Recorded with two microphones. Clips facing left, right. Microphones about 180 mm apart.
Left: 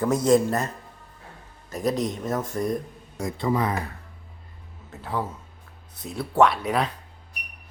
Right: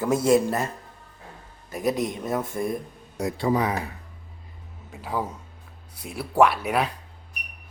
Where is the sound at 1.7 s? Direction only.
5° right (ahead or behind).